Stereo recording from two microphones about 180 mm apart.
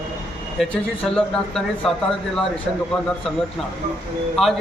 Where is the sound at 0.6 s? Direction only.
5° left (ahead or behind).